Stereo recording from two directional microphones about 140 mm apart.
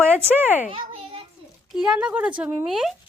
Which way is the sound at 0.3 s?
10° left (ahead or behind).